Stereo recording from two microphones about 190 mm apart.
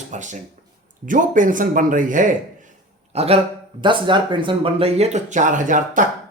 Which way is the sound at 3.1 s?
30° right (ahead or behind).